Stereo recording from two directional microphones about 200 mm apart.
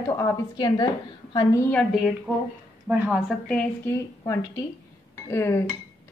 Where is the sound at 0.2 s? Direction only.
15° left (ahead or behind).